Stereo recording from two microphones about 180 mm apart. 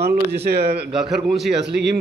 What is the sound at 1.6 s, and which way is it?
Speech, 70° right (ahead or behind).